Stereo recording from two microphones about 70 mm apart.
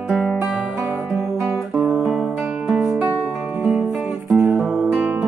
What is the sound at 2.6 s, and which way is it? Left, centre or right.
Music, centre.